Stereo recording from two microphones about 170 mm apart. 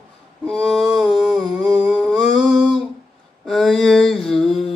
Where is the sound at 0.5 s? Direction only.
Centre (ahead or behind).